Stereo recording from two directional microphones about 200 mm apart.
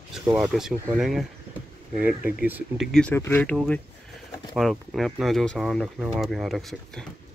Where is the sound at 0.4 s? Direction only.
Centre (ahead or behind).